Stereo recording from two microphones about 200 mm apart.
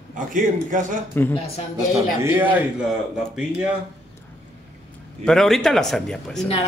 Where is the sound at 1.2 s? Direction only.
10° left (ahead or behind).